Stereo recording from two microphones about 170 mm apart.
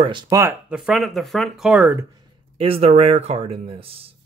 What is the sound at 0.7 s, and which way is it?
Speech, 5° right (ahead or behind).